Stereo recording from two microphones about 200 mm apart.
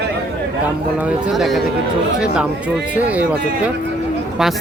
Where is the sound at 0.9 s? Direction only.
5° right (ahead or behind).